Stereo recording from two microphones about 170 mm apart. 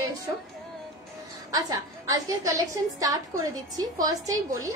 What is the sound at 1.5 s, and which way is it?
A woman's voice, 20° right (ahead or behind).